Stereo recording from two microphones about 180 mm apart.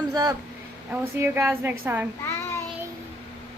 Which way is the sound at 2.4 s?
15° left (ahead or behind).